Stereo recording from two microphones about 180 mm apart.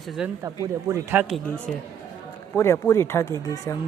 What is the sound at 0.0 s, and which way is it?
Speech, centre (ahead or behind).